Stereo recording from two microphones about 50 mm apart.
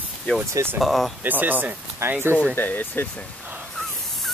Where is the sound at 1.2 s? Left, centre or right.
Right.